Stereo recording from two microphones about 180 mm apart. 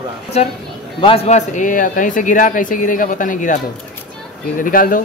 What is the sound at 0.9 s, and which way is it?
Speech, 30° left (ahead or behind).